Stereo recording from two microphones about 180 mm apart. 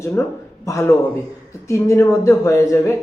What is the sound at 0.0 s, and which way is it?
A man's voice, 15° left (ahead or behind).